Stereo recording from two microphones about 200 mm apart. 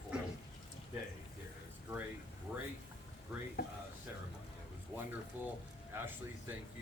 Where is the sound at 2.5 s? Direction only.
5° right (ahead or behind).